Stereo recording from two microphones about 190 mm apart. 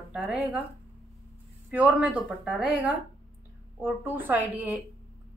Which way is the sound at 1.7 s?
5° right (ahead or behind).